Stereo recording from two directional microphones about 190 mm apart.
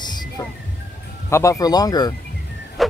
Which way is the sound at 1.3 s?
15° left (ahead or behind).